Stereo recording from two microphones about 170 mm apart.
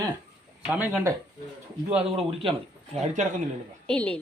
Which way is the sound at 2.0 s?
35° right (ahead or behind).